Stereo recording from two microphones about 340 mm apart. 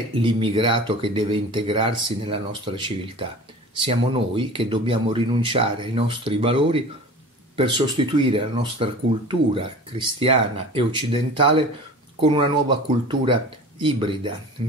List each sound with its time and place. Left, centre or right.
0.1 s speech: centre